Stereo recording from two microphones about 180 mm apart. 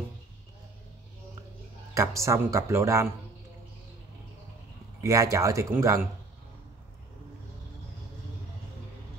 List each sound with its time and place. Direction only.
2.0 s speech: 15° right (ahead or behind)
5.0 s speech: 15° right (ahead or behind)